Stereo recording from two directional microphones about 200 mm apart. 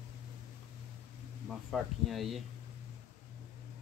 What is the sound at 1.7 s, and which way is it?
Speech, centre (ahead or behind).